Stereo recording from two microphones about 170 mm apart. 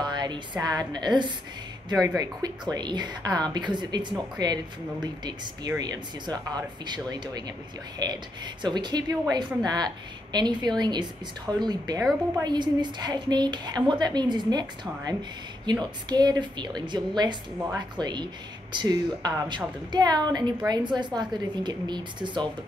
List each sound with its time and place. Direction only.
0.0 s a woman's voice: 25° right (ahead or behind)